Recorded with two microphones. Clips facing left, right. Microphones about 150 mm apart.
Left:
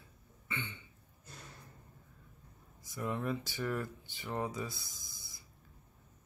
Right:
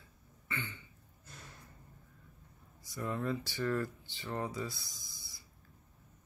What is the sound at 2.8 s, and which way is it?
Speech, 15° left (ahead or behind).